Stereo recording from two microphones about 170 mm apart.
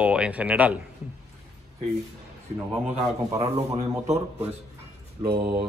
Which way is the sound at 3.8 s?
20° right (ahead or behind).